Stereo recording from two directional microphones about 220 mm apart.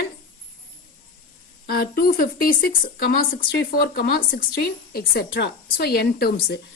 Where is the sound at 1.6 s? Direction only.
45° left (ahead or behind).